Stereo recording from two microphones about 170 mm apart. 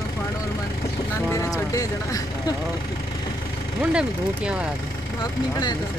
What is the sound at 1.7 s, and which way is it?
Speech, 20° left (ahead or behind).